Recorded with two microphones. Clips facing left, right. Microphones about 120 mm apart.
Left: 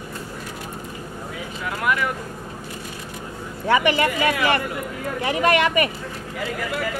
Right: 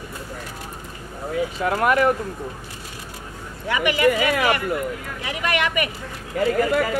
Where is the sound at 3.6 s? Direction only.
35° left (ahead or behind).